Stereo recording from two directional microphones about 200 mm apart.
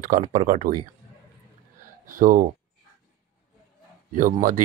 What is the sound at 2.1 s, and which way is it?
Speech, 40° right (ahead or behind).